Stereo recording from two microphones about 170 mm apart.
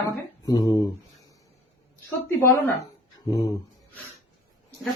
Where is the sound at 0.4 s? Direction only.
20° left (ahead or behind).